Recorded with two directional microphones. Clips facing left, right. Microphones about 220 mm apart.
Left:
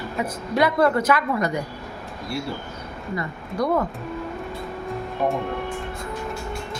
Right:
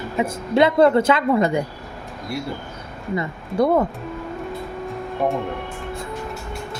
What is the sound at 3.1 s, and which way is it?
Speech, 25° right (ahead or behind).